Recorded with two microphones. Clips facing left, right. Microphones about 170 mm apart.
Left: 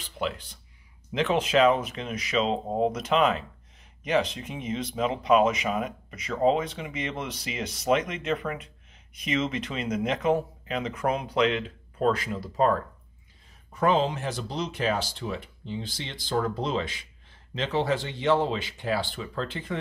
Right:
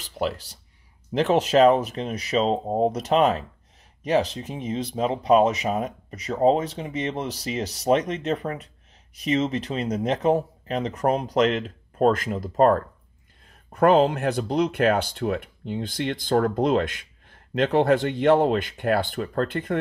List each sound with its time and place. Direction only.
0.0 s speech: 40° right (ahead or behind)